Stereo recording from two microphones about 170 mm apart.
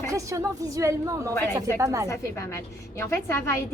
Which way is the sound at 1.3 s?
15° left (ahead or behind).